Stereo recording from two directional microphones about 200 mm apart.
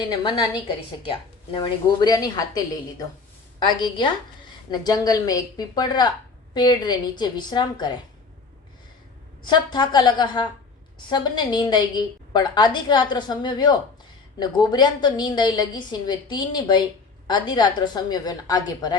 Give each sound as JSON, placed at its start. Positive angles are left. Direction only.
{"t": 0.0, "sound": "a woman's voice", "side_deg": 25}
{"t": 3.6, "sound": "a woman's voice", "side_deg": 20}
{"t": 9.4, "sound": "a woman's voice", "side_deg": 20}